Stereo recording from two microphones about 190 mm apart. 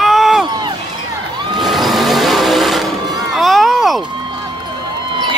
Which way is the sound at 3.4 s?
Centre (ahead or behind).